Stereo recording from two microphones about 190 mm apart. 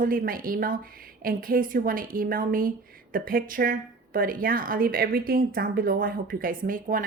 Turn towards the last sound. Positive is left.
turn(degrees=-45)  # may be behind; listen again after turning